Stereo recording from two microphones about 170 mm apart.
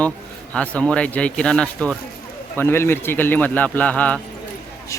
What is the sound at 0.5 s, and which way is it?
Speech, 5° left (ahead or behind).